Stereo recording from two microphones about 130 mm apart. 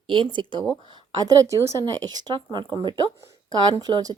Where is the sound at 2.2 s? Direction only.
35° right (ahead or behind).